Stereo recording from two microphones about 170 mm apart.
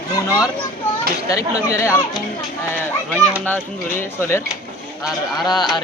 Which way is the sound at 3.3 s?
10° left (ahead or behind).